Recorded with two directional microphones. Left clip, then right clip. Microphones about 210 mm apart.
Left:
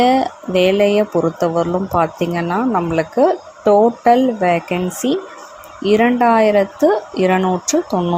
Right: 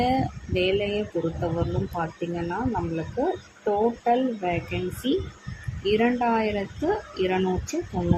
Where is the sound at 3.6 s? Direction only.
35° left (ahead or behind).